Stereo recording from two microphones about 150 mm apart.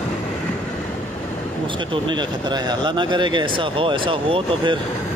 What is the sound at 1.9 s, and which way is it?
Speech, 30° right (ahead or behind).